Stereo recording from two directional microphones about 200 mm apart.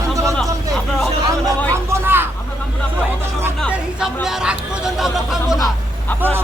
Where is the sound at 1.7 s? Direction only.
10° right (ahead or behind).